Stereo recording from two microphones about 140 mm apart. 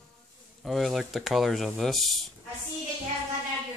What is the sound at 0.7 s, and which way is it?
Speech, centre (ahead or behind).